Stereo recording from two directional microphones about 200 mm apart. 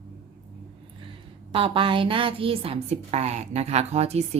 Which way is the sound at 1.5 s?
25° right (ahead or behind).